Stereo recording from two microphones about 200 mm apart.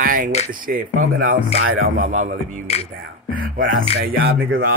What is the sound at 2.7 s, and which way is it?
Speech, 30° left (ahead or behind).